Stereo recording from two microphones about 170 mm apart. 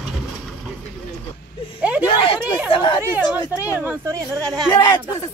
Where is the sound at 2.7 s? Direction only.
25° left (ahead or behind).